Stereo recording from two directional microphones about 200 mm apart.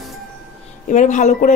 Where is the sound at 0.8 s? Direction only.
35° left (ahead or behind).